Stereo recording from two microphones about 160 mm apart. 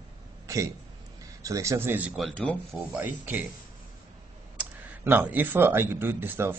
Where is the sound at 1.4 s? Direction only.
20° right (ahead or behind).